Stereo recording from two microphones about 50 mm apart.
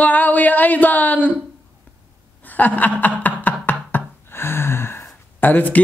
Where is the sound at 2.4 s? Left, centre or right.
Left.